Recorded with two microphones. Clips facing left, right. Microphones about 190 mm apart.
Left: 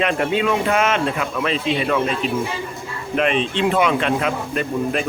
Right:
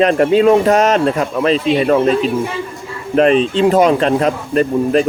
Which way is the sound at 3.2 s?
40° right (ahead or behind).